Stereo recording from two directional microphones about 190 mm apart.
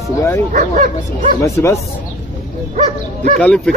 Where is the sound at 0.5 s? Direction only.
45° right (ahead or behind).